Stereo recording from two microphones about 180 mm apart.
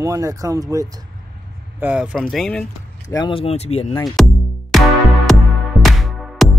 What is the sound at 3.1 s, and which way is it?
Speech, 25° left (ahead or behind).